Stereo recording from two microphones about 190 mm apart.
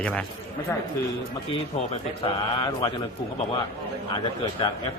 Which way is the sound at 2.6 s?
20° left (ahead or behind).